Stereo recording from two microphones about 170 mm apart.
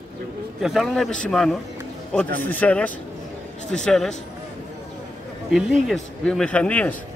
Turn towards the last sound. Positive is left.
turn(degrees=10)  # may be behind; listen again after turning